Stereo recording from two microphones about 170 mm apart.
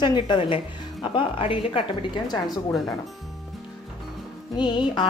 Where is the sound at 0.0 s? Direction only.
30° left (ahead or behind).